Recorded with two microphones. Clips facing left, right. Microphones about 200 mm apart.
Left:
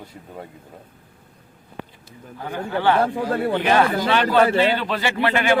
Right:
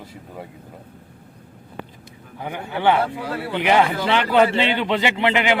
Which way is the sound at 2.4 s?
15° right (ahead or behind).